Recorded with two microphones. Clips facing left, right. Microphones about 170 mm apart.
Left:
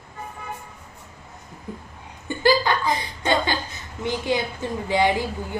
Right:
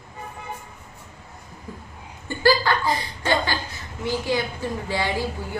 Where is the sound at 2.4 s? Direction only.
20° left (ahead or behind).